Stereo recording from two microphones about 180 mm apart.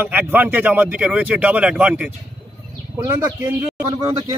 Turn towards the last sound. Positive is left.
turn(degrees=-20)  # may be behind; listen again after turning